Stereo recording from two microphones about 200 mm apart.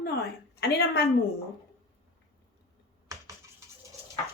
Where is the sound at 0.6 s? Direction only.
55° left (ahead or behind).